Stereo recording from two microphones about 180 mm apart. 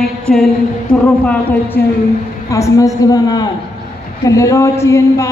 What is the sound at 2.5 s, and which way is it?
A woman's voice, 20° left (ahead or behind).